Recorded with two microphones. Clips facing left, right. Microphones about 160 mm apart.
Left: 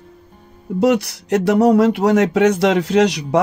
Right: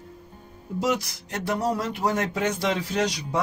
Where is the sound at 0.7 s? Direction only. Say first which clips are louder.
Left 10 dB; 65° left (ahead or behind).